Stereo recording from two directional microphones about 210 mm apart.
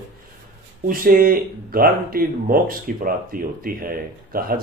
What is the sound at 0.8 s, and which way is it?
Speech, 40° right (ahead or behind).